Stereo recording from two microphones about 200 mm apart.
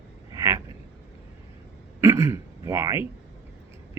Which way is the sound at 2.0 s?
15° right (ahead or behind).